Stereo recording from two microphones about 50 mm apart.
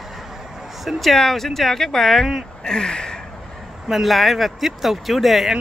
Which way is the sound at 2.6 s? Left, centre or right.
Centre.